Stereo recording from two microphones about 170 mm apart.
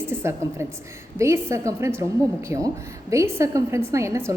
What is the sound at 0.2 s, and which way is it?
A woman's voice, 15° right (ahead or behind).